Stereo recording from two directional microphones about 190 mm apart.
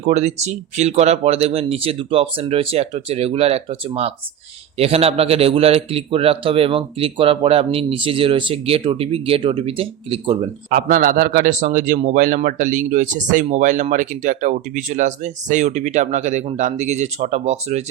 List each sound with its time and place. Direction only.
0.0 s a man's voice: 35° right (ahead or behind)
10.7 s a man's voice: 50° right (ahead or behind)